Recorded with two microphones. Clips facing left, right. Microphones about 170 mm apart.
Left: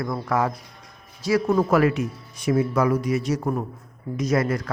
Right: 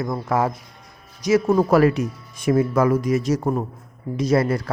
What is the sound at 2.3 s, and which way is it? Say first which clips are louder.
Speech: right 3 dB; 50° right (ahead or behind).